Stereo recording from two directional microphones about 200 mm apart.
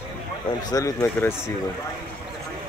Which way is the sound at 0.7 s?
20° left (ahead or behind).